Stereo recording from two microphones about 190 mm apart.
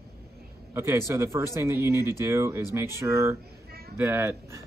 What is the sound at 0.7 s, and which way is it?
Speech, 15° right (ahead or behind).